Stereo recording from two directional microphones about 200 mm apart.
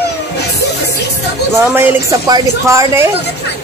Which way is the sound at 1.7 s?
15° right (ahead or behind).